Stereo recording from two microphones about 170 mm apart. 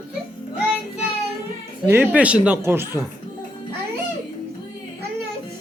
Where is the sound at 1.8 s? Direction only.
10° right (ahead or behind).